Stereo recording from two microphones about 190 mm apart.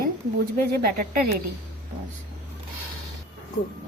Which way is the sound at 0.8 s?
50° right (ahead or behind).